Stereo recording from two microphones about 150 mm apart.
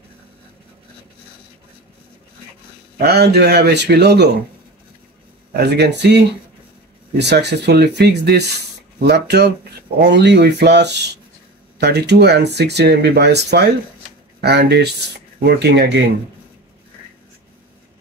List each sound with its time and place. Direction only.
3.0 s speech: 90° right
5.6 s speech: 90° right
7.3 s speech: 90° right
11.8 s speech: 90° right